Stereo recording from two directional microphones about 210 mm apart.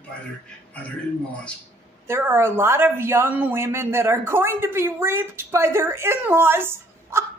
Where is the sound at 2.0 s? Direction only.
10° right (ahead or behind).